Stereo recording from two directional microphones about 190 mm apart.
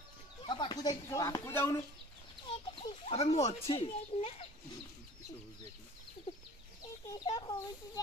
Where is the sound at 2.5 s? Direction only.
25° left (ahead or behind).